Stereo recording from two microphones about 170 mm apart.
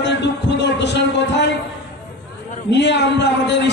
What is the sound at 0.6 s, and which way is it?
Speech, 90° left.